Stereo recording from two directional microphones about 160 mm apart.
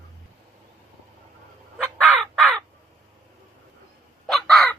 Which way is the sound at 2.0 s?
Centre (ahead or behind).